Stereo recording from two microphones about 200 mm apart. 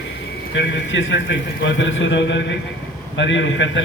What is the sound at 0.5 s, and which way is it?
A man's voice, 65° left (ahead or behind).